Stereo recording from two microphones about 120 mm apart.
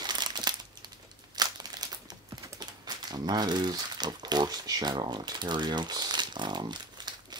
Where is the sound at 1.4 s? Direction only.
35° right (ahead or behind).